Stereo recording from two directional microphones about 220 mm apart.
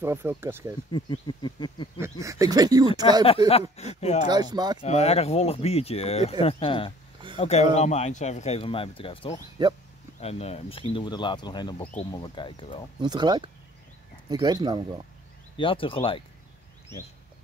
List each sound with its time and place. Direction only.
0.0 s speech: 10° right (ahead or behind)
0.9 s speech: 20° left (ahead or behind)
2.0 s speech: 15° right (ahead or behind)
3.7 s speech: 30° left (ahead or behind)
4.3 s speech: 20° right (ahead or behind)
4.8 s speech: 30° left (ahead or behind)
9.6 s speech: 20° right (ahead or behind)
10.2 s speech: 25° left (ahead or behind)
13.0 s speech: 20° right (ahead or behind)
15.5 s speech: 25° left (ahead or behind)